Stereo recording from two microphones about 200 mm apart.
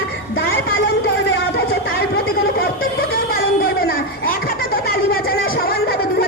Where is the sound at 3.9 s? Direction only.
45° left (ahead or behind).